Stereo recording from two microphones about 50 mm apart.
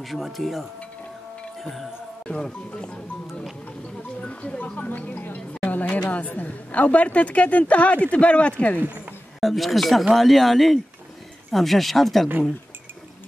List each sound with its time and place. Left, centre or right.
0.0 s speech: centre
1.6 s music: centre
2.2 s speech: centre
4.2 s music: centre
4.7 s a woman's voice: left
9.4 s speech: centre